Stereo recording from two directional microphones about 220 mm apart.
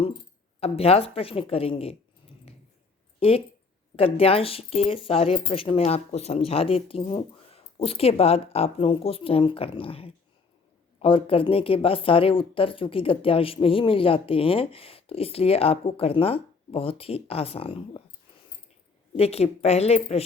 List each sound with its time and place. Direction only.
0.6 s speech: 25° left (ahead or behind)
3.2 s speech: 25° left (ahead or behind)
19.1 s speech: 25° left (ahead or behind)